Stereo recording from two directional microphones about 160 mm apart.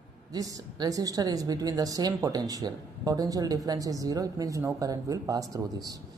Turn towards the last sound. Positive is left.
turn(degrees=-20)  # may be behind; listen again after turning